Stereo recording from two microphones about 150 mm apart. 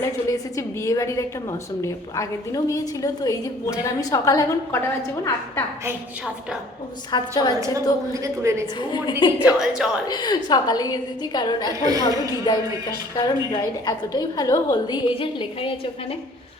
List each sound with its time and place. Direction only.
0.0 s a woman's voice: 20° left (ahead or behind)
7.1 s a woman's voice: 25° left (ahead or behind)
8.1 s a woman's voice: 20° right (ahead or behind)
8.6 s a woman's voice: 30° left (ahead or behind)
9.4 s a woman's voice: 5° right (ahead or behind)
10.1 s a woman's voice: 30° left (ahead or behind)
11.9 s a woman's voice: 25° right (ahead or behind)
13.1 s a woman's voice: 25° left (ahead or behind)